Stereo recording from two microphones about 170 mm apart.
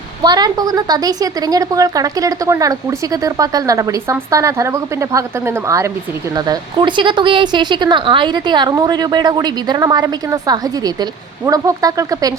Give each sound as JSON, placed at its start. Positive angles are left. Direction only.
{"t": 0.2, "sound": "speech", "side_deg": -25}